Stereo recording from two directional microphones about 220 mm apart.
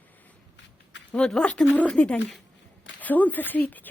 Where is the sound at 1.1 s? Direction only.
5° left (ahead or behind).